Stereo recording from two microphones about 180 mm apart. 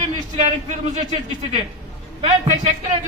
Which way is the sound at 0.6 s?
40° right (ahead or behind).